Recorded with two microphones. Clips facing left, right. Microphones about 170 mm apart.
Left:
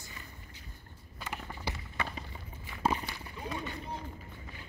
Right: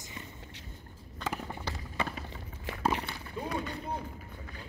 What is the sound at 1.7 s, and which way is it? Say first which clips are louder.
Run: left 3 dB; 10° left (ahead or behind).